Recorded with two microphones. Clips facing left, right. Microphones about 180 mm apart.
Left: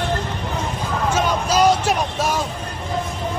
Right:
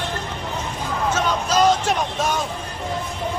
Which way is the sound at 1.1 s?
10° left (ahead or behind).